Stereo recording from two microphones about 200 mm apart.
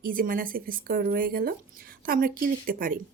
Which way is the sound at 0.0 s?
45° right (ahead or behind).